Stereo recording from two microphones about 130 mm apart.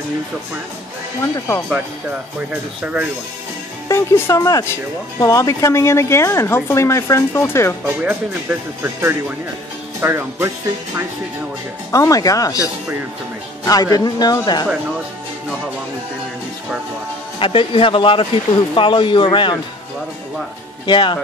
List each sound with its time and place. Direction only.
1.2 s speech: 25° left (ahead or behind)
1.7 s speech: 10° right (ahead or behind)
3.9 s speech: 25° left (ahead or behind)
7.8 s speech: 15° right (ahead or behind)
11.9 s speech: 25° left (ahead or behind)
13.7 s speech: 30° left (ahead or behind)
17.4 s speech: 45° left (ahead or behind)
20.8 s speech: 35° left (ahead or behind)